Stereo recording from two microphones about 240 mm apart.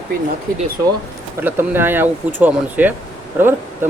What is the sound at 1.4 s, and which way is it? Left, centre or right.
Speech, centre.